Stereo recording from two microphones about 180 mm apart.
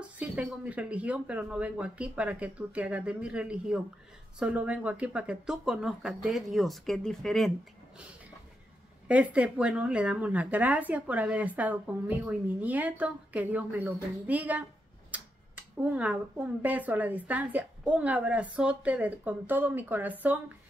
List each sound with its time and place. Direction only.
0.0 s speech: 5° right (ahead or behind)
9.0 s speech: 5° right (ahead or behind)
15.1 s tick-tock: 10° right (ahead or behind)
15.8 s speech: 5° right (ahead or behind)